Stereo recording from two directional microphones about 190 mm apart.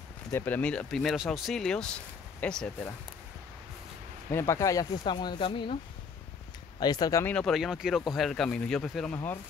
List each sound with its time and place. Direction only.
0.3 s speech: 10° left (ahead or behind)
4.3 s speech: 15° left (ahead or behind)
6.8 s speech: 20° left (ahead or behind)